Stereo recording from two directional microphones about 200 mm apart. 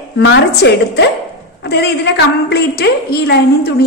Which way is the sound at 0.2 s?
60° left (ahead or behind).